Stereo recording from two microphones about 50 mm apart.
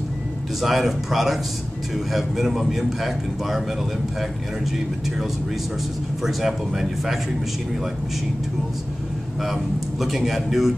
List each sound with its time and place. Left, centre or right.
0.6 s a man's voice: centre
6.2 s a man's voice: centre
9.4 s a man's voice: centre